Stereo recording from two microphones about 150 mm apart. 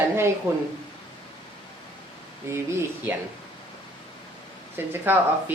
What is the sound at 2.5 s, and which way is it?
Speech, 20° right (ahead or behind).